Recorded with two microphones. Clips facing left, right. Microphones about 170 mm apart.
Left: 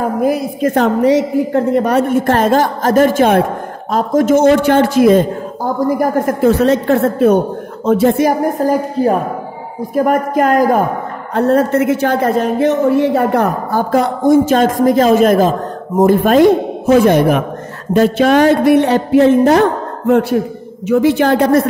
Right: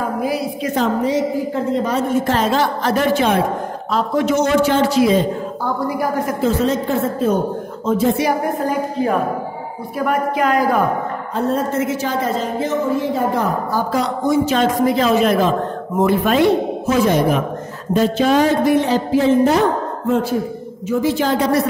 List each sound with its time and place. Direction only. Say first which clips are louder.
0.2 s a woman's voice: left 6 dB; 50° left (ahead or behind); by 8.2 s 70° left (ahead or behind)
8.2 s a woman's voice: left 5 dB; 40° left (ahead or behind)
11.3 s a woman's voice: left 7 dB; 70° left (ahead or behind); by 21.6 s 55° left (ahead or behind)